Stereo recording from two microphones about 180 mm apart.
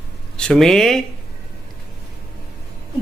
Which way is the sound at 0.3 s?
5° left (ahead or behind).